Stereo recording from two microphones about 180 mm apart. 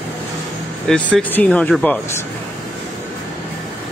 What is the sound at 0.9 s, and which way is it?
Speech, 10° left (ahead or behind).